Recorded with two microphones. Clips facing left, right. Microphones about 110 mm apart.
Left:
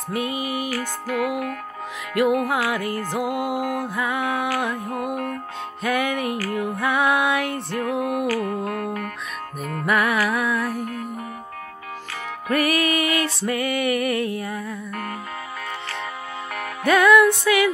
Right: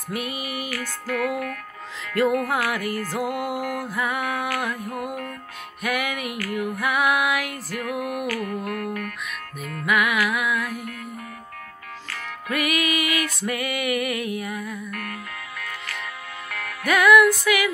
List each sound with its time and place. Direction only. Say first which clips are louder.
0.1 s music: left 4 dB; 20° left (ahead or behind)
12.4 s music: left 4 dB; 35° left (ahead or behind)